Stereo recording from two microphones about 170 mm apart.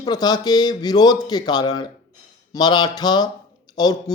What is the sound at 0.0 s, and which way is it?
Music, 25° left (ahead or behind).